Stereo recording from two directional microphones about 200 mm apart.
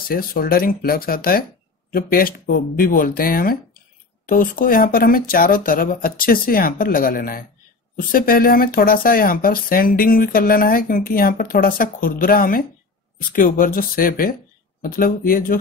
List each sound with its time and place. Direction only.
0.1 s speech: 45° left (ahead or behind)